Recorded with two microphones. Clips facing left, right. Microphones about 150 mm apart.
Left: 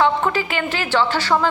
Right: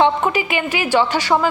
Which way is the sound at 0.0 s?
15° right (ahead or behind).